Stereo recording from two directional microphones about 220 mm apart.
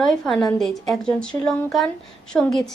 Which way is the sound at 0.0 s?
Centre (ahead or behind).